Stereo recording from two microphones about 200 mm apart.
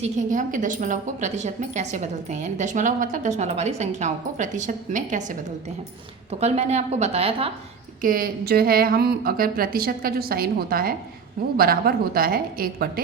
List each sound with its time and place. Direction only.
0.0 s a woman's voice: 40° right (ahead or behind)
8.0 s a woman's voice: 45° right (ahead or behind)